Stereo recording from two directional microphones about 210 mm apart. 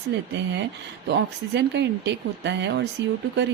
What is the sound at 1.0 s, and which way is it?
Speech, 55° right (ahead or behind).